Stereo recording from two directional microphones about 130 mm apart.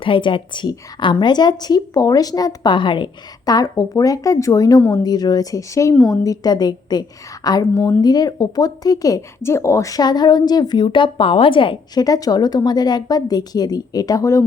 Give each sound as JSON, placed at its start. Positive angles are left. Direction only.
{"t": 0.0, "sound": "a woman's voice", "side_deg": 40}
{"t": 12.0, "sound": "speech", "side_deg": 30}